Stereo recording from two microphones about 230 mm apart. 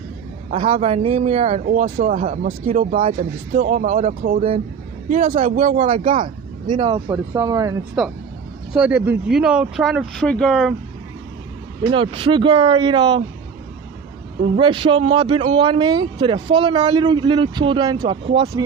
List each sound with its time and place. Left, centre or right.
0.5 s speech: right
6.7 s speech: centre
8.0 s speech: centre
11.8 s speech: right
14.6 s speech: right